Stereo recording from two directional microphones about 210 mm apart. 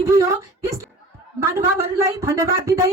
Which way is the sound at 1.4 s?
15° right (ahead or behind).